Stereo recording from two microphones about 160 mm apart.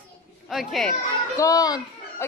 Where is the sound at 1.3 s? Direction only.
20° left (ahead or behind).